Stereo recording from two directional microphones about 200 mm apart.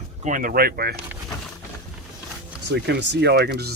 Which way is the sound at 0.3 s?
40° right (ahead or behind).